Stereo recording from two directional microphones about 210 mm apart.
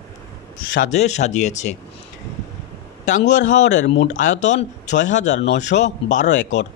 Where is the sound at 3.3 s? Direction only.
35° left (ahead or behind).